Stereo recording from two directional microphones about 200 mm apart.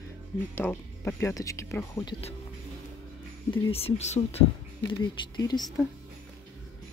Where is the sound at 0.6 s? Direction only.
10° left (ahead or behind).